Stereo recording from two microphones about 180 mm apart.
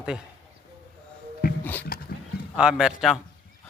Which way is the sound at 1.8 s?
55° left (ahead or behind).